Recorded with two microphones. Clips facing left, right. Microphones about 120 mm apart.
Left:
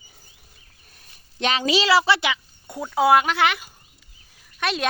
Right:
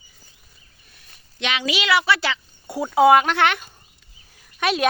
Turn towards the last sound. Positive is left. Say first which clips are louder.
# right 4 dB
turn(degrees=0)  # may be behind; listen again after turning